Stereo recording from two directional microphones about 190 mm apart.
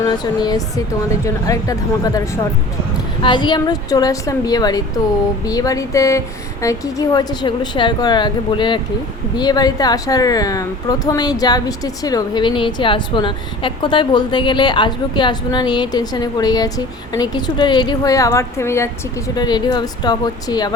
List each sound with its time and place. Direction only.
0.0 s a woman's voice: 20° left (ahead or behind)